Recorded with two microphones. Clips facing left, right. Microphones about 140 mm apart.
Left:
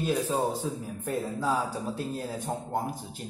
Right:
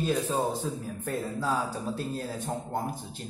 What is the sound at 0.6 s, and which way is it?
Speech, 10° left (ahead or behind).